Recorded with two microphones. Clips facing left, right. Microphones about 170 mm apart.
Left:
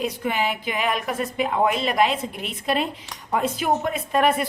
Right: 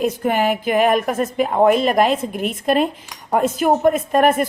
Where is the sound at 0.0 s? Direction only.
50° right (ahead or behind).